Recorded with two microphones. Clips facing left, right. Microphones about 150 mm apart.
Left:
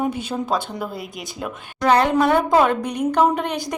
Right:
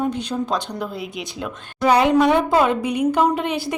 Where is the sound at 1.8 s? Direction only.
10° right (ahead or behind).